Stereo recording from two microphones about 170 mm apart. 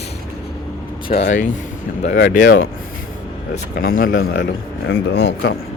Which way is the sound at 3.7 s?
60° left (ahead or behind).